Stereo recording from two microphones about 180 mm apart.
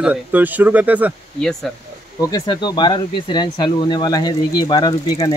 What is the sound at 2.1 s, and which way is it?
Speech, 20° left (ahead or behind).